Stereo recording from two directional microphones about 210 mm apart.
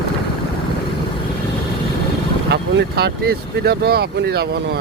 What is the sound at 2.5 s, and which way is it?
Speech, 50° right (ahead or behind).